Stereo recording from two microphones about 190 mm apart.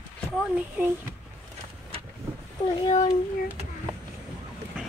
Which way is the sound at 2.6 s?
25° left (ahead or behind).